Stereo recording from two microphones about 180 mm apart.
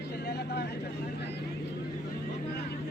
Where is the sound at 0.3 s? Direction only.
65° left (ahead or behind).